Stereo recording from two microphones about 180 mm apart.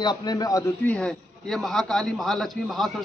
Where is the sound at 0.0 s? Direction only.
25° left (ahead or behind).